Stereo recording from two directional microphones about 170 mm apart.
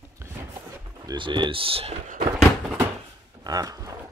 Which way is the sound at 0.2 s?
15° right (ahead or behind).